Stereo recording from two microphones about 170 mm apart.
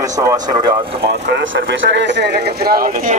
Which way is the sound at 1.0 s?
80° right.